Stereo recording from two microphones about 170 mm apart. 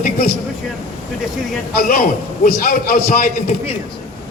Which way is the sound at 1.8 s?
60° left (ahead or behind).